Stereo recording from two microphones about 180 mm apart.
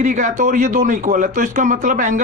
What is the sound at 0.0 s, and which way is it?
A man's voice, 45° right (ahead or behind).